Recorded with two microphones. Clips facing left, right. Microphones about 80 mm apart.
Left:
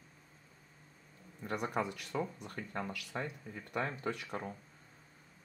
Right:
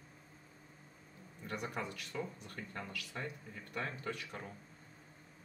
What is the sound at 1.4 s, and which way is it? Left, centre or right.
Speech, left.